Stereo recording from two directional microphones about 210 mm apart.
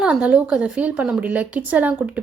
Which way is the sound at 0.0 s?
5° right (ahead or behind).